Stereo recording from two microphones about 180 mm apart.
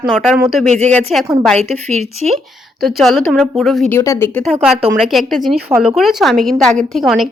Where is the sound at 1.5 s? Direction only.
35° right (ahead or behind).